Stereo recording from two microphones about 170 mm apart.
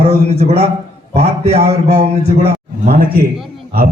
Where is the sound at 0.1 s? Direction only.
40° right (ahead or behind).